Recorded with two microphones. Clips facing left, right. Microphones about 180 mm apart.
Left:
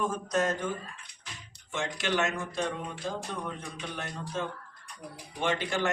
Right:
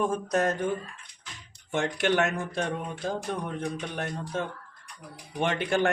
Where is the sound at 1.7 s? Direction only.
60° right (ahead or behind).